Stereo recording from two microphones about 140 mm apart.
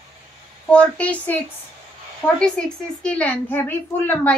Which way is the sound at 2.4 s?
5° left (ahead or behind).